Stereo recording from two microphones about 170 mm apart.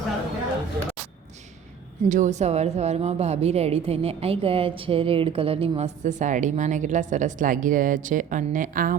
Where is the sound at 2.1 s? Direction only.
45° right (ahead or behind).